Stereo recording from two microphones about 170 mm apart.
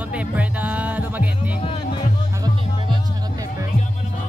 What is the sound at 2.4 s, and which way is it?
Music, 25° right (ahead or behind).